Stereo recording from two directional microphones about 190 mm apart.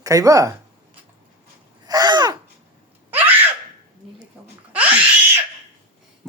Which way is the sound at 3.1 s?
10° right (ahead or behind).